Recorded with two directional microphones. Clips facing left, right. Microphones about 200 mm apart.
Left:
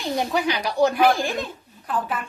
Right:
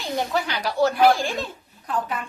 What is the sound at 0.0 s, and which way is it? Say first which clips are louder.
Speech: left 2 dB; 15° left (ahead or behind).